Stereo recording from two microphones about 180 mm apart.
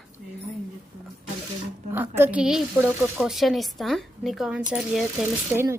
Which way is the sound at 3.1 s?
Centre (ahead or behind).